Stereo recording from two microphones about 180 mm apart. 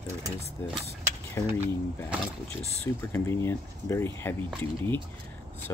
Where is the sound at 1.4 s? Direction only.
15° left (ahead or behind).